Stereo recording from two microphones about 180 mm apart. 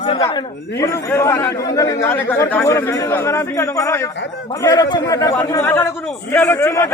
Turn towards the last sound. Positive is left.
turn(degrees=15)  # may be behind; listen again after turning